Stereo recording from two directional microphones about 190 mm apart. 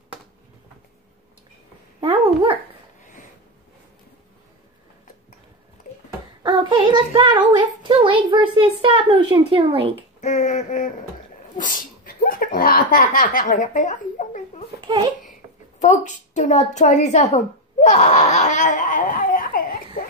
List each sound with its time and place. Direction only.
2.0 s dog: 30° right (ahead or behind)
5.9 s a sound: 50° left (ahead or behind)
6.4 s a child's voice: 20° right (ahead or behind)
10.2 s a sound: 40° left (ahead or behind)
11.5 s speech: 45° left (ahead or behind)
15.8 s a woman's voice: 40° left (ahead or behind)